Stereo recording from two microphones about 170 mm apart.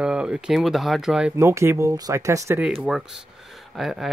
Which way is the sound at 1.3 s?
15° right (ahead or behind).